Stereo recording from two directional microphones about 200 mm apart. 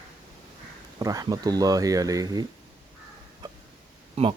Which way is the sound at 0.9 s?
20° right (ahead or behind).